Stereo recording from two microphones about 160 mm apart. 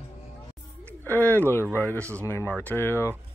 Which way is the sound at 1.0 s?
10° left (ahead or behind).